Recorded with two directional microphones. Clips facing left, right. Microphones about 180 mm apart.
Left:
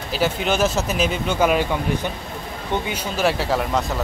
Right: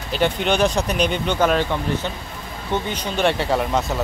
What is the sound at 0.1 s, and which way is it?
Speech, 5° left (ahead or behind).